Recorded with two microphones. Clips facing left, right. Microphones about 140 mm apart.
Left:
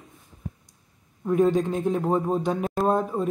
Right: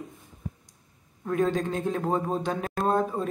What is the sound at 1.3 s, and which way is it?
Speech, 10° left (ahead or behind).